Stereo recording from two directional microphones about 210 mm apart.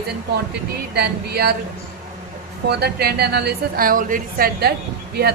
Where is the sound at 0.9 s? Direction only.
50° right (ahead or behind).